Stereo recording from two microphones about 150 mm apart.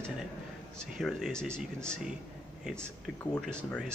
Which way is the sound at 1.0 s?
Centre (ahead or behind).